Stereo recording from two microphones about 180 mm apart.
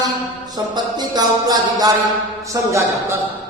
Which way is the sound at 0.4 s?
20° right (ahead or behind).